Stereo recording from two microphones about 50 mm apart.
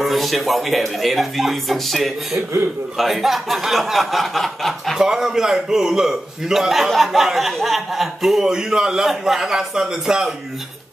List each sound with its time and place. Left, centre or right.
0.0 s speech: centre
4.9 s a man's voice: centre